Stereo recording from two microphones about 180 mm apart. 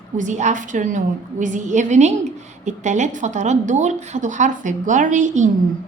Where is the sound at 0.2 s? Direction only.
45° right (ahead or behind).